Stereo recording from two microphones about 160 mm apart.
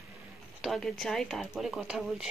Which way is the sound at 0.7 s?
Centre (ahead or behind).